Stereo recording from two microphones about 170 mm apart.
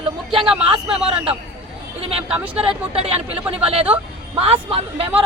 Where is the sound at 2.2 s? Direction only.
10° right (ahead or behind).